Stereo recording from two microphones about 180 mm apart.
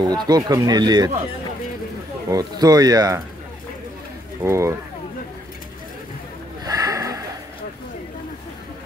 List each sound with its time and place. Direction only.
0.1 s speech: 20° right (ahead or behind)
2.2 s speech: 20° right (ahead or behind)
4.4 s speech: 15° right (ahead or behind)
6.6 s a sound: 20° right (ahead or behind)